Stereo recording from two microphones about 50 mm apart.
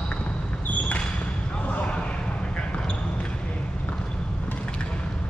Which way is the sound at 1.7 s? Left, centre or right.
Left.